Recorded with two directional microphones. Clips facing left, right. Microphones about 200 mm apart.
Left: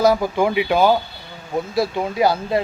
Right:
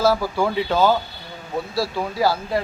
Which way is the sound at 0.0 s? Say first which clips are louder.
Left 3 dB; 20° left (ahead or behind).